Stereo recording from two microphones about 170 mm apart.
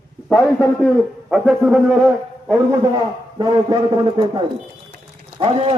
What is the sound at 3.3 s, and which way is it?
A man's voice, 25° right (ahead or behind).